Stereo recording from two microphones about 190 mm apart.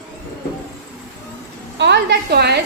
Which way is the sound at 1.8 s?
60° right (ahead or behind).